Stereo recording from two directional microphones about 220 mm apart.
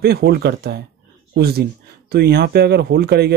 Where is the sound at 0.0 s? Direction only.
45° right (ahead or behind).